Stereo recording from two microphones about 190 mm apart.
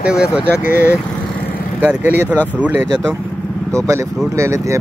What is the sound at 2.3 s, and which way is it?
Speech, 10° left (ahead or behind).